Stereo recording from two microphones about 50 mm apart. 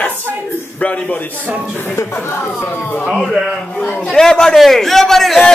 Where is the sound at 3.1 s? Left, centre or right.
Centre.